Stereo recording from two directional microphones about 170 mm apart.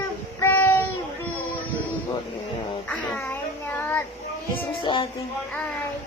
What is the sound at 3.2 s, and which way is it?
Child singing, 10° left (ahead or behind).